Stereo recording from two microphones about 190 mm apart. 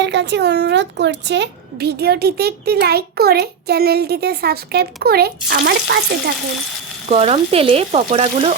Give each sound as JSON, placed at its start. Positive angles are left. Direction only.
{"t": 0.0, "sound": "a woman's voice", "side_deg": -65}
{"t": 7.1, "sound": "speech", "side_deg": -30}